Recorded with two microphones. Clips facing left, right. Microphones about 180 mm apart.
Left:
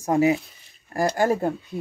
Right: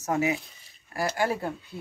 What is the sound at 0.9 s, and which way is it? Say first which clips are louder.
Speech: left 6 dB; 45° left (ahead or behind).